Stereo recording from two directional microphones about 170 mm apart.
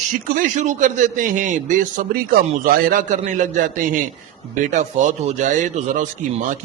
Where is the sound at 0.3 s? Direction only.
50° right (ahead or behind).